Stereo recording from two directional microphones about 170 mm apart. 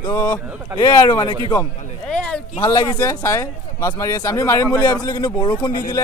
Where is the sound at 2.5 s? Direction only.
25° left (ahead or behind).